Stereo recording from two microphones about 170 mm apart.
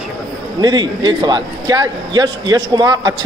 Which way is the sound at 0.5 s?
25° right (ahead or behind).